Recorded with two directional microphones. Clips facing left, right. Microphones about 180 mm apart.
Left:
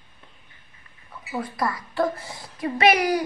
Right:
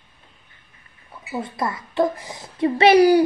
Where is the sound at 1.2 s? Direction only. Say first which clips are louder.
Right 1 dB; 25° right (ahead or behind).